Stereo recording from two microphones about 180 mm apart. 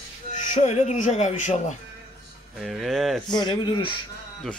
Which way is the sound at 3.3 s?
25° left (ahead or behind).